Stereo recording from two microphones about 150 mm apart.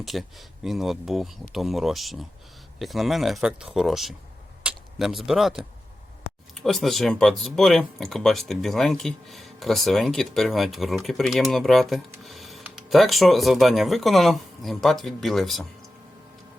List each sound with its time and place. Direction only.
0.0 s speech: centre (ahead or behind)